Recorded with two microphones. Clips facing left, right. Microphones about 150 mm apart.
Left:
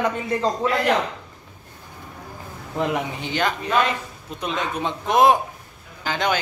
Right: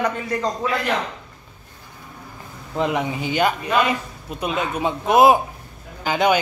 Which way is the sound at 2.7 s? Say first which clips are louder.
Right 2 dB; centre (ahead or behind).